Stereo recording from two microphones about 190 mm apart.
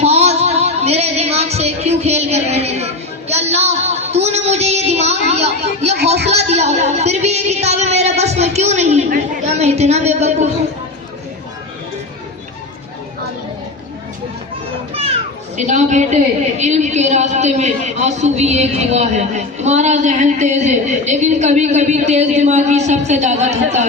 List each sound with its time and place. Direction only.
0.0 s music: 35° right (ahead or behind)
5.3 s a sound: 35° right (ahead or behind)
6.3 s music: 35° right (ahead or behind)
15.5 s a man's voice: 40° right (ahead or behind)